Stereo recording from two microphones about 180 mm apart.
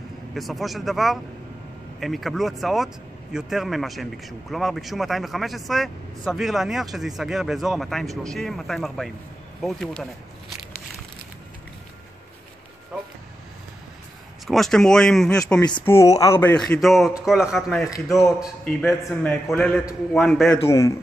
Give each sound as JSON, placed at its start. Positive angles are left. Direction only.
{"t": 0.3, "sound": "a man's voice", "side_deg": 0}
{"t": 14.5, "sound": "a man's voice", "side_deg": 0}
{"t": 15.8, "sound": "a man's voice", "side_deg": 15}
{"t": 20.6, "sound": "speech", "side_deg": 15}